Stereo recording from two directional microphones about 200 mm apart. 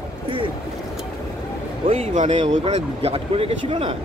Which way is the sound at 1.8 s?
30° right (ahead or behind).